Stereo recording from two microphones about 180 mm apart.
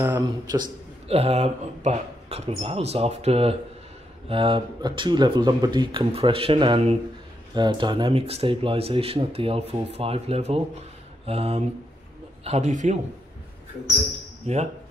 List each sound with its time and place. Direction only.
0.0 s speech: 20° right (ahead or behind)
1.0 s speech: 35° right (ahead or behind)
14.4 s speech: 35° right (ahead or behind)